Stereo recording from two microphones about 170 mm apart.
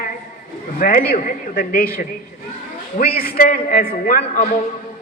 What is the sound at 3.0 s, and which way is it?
A man's voice, 60° left (ahead or behind).